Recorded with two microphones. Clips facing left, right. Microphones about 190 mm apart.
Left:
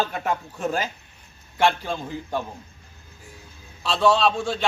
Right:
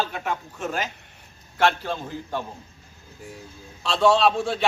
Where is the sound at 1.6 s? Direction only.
10° left (ahead or behind).